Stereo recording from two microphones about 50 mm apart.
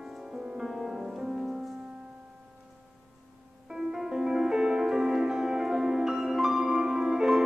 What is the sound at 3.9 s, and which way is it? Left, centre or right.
Music, centre.